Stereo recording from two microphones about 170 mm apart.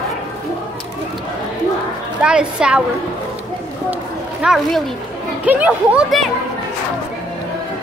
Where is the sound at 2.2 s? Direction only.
5° right (ahead or behind).